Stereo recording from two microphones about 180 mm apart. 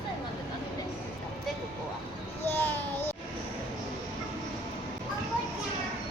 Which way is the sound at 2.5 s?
10° left (ahead or behind).